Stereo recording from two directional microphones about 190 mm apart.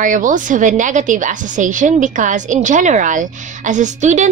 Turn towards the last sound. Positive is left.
turn(degrees=-40)  # may be behind; listen again after turning